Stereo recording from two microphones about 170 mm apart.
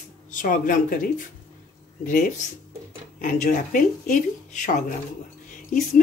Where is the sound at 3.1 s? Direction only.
50° left (ahead or behind).